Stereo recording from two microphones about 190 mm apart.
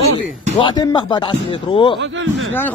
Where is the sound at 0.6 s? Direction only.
25° left (ahead or behind).